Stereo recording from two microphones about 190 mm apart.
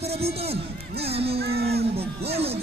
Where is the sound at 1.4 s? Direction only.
60° right (ahead or behind).